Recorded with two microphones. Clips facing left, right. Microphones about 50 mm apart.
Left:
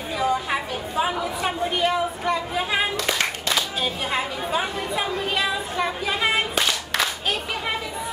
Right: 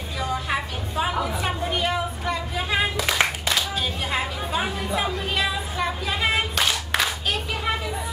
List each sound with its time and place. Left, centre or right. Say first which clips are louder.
0.2 s chatter: left 3 dB; centre
3.0 s clapping: right 2 dB; centre
4.1 s chatter: even; centre